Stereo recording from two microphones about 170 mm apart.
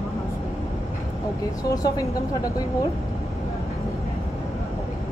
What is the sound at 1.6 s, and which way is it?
Speech, 20° left (ahead or behind).